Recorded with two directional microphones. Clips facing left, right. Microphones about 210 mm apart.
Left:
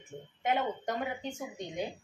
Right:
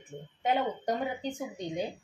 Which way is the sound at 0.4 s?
35° right (ahead or behind).